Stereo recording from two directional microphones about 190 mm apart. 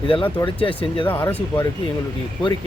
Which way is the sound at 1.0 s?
10° left (ahead or behind).